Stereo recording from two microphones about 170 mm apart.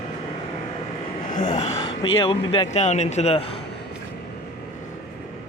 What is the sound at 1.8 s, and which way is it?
Speech, 30° left (ahead or behind).